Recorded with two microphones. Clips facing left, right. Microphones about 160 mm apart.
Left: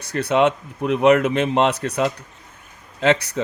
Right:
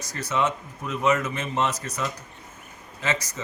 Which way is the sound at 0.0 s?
60° left (ahead or behind).